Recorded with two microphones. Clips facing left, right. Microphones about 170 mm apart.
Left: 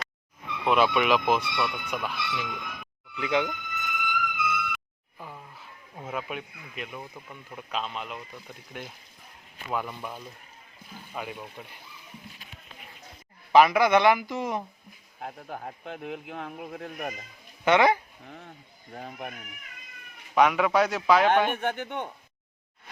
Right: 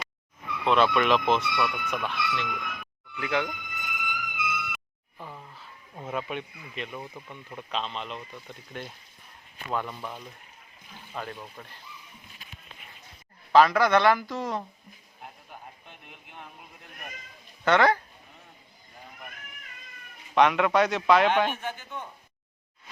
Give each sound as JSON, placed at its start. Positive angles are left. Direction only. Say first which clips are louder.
{"t": 0.6, "sound": "a man's voice", "louder": "even", "side_deg": 5}
{"t": 3.2, "sound": "speech", "louder": "left 2 dB", "side_deg": 15}
{"t": 3.4, "sound": "music", "louder": "left 3 dB", "side_deg": -10}
{"t": 5.2, "sound": "speech", "louder": "even", "side_deg": 5}
{"t": 13.5, "sound": "speech", "louder": "left 1 dB", "side_deg": 15}
{"t": 15.2, "sound": "speech", "louder": "left 9 dB", "side_deg": 85}
{"t": 17.7, "sound": "speech", "louder": "left 1 dB", "side_deg": 15}
{"t": 18.3, "sound": "a sound", "louder": "left 8 dB", "side_deg": 80}
{"t": 20.3, "sound": "a man's voice", "louder": "even", "side_deg": 5}
{"t": 21.5, "sound": "speech", "louder": "left 6 dB", "side_deg": 60}